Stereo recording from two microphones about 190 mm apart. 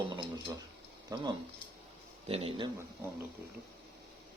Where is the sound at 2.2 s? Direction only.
30° right (ahead or behind).